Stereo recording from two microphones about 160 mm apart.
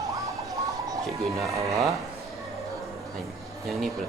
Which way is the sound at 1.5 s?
20° right (ahead or behind).